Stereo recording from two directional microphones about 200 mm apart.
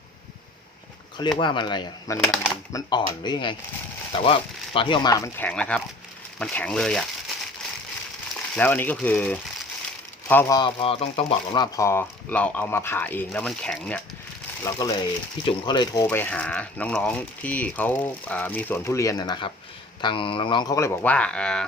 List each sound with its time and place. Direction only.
1.2 s speech: 25° left (ahead or behind)
2.1 s speech: 10° left (ahead or behind)
2.9 s speech: 20° left (ahead or behind); by 7.0 s 5° left (ahead or behind)
8.5 s speech: 10° left (ahead or behind)
10.6 s speech: 25° left (ahead or behind); by 14.0 s 5° left (ahead or behind)
14.6 s speech: 15° left (ahead or behind)
16.0 s speech: 10° left (ahead or behind)